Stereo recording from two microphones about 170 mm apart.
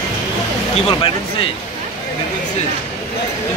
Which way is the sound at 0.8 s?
30° left (ahead or behind).